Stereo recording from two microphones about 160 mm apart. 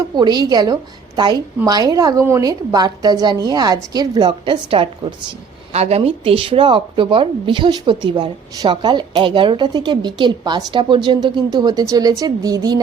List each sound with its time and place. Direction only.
0.2 s a woman's voice: 25° right (ahead or behind)